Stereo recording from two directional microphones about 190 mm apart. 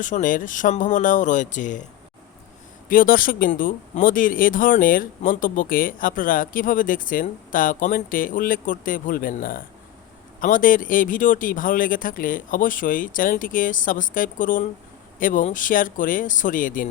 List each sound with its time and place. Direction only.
0.0 s speech: 40° left (ahead or behind)
2.9 s speech: 45° left (ahead or behind)